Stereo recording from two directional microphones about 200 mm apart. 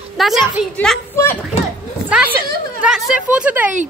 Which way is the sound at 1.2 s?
15° left (ahead or behind).